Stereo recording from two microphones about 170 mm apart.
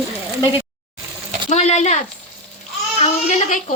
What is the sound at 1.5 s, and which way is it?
Speech, 40° left (ahead or behind).